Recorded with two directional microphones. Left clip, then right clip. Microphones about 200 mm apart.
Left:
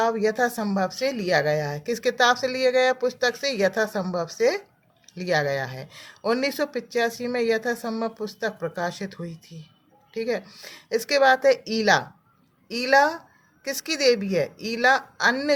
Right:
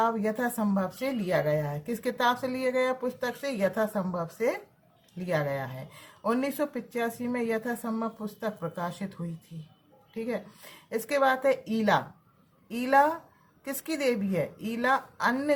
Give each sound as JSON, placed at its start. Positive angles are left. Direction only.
{"t": 0.0, "sound": "speech", "side_deg": 30}
{"t": 10.2, "sound": "speech", "side_deg": 35}